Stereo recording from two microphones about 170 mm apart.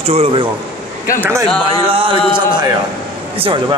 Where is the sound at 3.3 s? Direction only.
35° right (ahead or behind).